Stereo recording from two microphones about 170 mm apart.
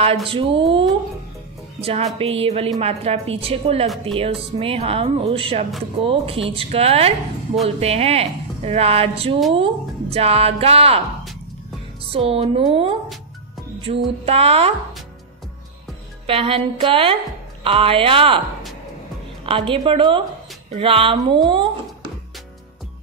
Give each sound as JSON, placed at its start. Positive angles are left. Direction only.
{"t": 0.3, "sound": "a woman's voice", "side_deg": -30}
{"t": 12.1, "sound": "a woman's voice", "side_deg": -35}
{"t": 13.9, "sound": "music", "side_deg": -45}
{"t": 14.2, "sound": "a woman's voice", "side_deg": -35}
{"t": 16.3, "sound": "a woman's voice", "side_deg": -35}
{"t": 19.4, "sound": "a woman's voice", "side_deg": -30}